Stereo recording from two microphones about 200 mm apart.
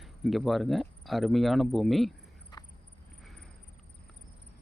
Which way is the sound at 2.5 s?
20° left (ahead or behind).